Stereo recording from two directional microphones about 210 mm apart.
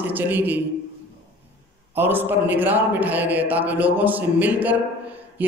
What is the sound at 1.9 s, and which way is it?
A man's voice, 10° right (ahead or behind).